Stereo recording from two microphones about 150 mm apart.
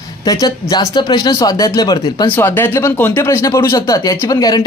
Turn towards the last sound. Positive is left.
turn(degrees=25)  # may be behind; listen again after turning